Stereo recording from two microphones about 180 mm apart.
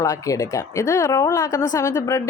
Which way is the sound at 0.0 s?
20° left (ahead or behind).